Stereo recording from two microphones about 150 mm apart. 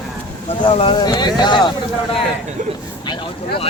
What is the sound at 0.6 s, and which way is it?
Speech, 35° left (ahead or behind).